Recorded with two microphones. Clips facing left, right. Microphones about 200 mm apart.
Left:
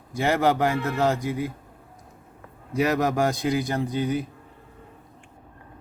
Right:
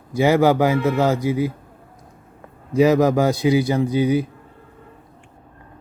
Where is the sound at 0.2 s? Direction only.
90° right.